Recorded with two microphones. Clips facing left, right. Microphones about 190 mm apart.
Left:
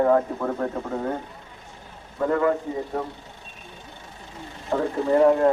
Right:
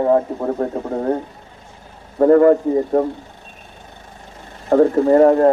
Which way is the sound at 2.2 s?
45° right (ahead or behind).